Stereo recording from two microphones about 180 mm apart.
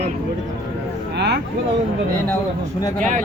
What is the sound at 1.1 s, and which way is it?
Speech, 70° right (ahead or behind).